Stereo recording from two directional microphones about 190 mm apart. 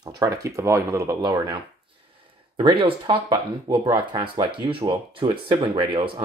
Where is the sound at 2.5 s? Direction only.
25° right (ahead or behind).